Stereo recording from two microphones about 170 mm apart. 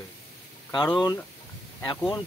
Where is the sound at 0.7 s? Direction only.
25° left (ahead or behind).